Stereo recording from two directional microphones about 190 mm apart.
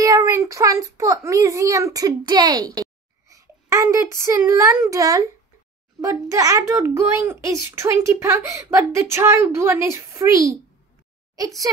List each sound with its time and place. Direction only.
0.0 s a child's voice: 15° right (ahead or behind)